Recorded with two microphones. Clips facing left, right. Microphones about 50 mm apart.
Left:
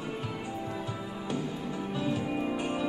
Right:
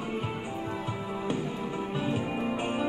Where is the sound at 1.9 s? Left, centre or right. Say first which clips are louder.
Left 1 dB; right.